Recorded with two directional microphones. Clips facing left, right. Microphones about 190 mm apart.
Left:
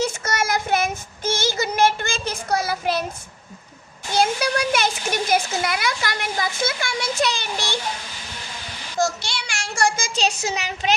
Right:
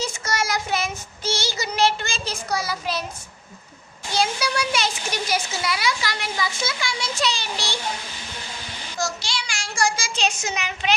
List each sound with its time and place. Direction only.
0.0 s child singing: 55° left (ahead or behind)
4.1 s a child's voice: 55° left (ahead or behind)
9.0 s child singing: 55° left (ahead or behind)
10.2 s speech: 35° left (ahead or behind)